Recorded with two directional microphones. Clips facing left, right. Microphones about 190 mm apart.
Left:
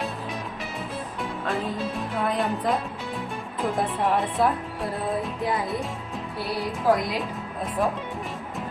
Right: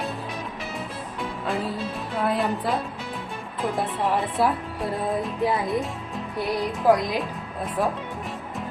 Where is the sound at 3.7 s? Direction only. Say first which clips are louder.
Left 1 dB; centre (ahead or behind).